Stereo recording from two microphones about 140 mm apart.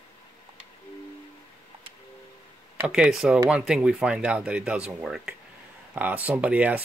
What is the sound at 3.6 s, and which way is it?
Speech, 5° right (ahead or behind).